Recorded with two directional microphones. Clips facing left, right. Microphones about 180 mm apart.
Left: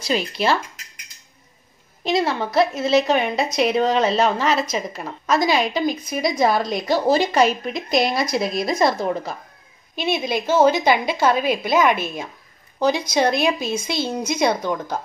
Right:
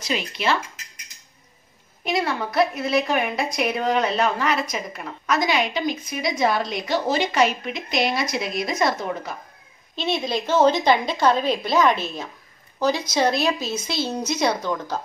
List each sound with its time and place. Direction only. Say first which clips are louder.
0.0 s a woman's voice: left 4 dB; 35° left (ahead or behind)
2.0 s a woman's voice: left 3 dB; 25° left (ahead or behind)
9.9 s a woman's voice: left 2 dB; 10° left (ahead or behind)